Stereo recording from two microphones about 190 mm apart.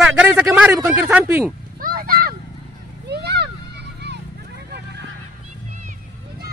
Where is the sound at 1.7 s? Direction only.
50° right (ahead or behind).